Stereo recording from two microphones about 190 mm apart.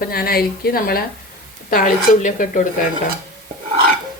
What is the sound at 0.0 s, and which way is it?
Speech, 50° left (ahead or behind).